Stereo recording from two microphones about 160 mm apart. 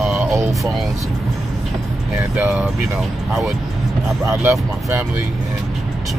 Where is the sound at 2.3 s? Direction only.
5° right (ahead or behind).